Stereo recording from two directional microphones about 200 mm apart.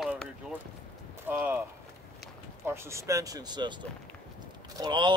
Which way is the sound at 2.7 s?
15° right (ahead or behind).